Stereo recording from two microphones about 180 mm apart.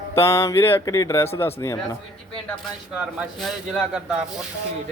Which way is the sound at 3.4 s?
5° right (ahead or behind).